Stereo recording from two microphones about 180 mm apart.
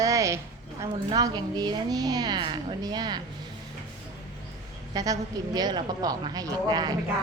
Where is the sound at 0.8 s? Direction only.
20° right (ahead or behind).